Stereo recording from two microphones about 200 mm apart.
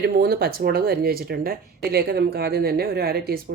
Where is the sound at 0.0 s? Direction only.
50° right (ahead or behind).